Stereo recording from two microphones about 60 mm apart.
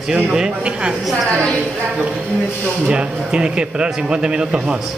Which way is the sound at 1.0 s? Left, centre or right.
Centre.